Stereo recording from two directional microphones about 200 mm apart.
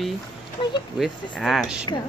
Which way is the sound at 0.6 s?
25° left (ahead or behind).